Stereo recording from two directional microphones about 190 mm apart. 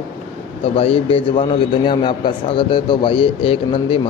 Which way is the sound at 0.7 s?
30° left (ahead or behind).